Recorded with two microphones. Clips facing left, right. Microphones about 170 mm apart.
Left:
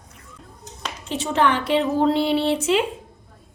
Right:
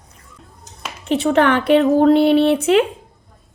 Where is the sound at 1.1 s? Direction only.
60° right (ahead or behind).